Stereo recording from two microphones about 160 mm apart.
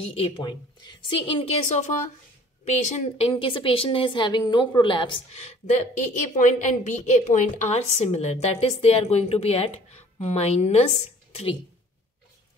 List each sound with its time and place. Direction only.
0.0 s a woman's voice: 40° left (ahead or behind)